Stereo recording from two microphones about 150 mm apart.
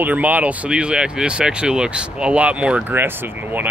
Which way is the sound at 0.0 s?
10° right (ahead or behind).